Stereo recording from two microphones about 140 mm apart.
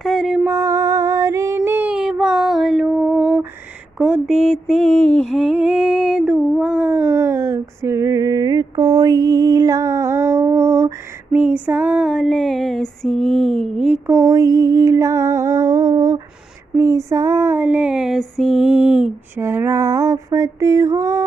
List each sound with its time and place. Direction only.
0.0 s a sound: centre (ahead or behind)
0.5 s female singing: 20° right (ahead or behind); by 5.0 s centre (ahead or behind)
5.1 s humming: centre (ahead or behind)
6.6 s a sound: 5° right (ahead or behind)
11.3 s female singing: 10° right (ahead or behind)
14.1 s music: 25° right (ahead or behind)
16.7 s female singing: 25° right (ahead or behind)